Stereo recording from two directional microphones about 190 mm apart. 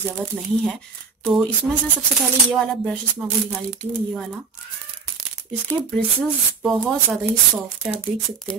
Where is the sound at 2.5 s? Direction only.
5° left (ahead or behind).